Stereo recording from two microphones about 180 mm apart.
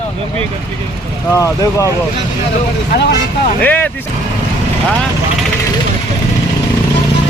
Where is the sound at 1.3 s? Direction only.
20° left (ahead or behind).